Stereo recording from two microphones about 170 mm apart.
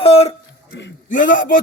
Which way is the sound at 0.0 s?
35° left (ahead or behind).